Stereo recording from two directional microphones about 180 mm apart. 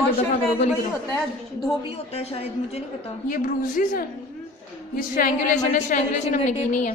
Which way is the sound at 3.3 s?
45° left (ahead or behind).